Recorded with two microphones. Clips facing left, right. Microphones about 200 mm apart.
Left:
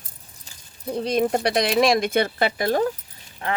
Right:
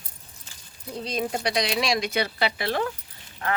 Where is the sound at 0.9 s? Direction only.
55° left (ahead or behind).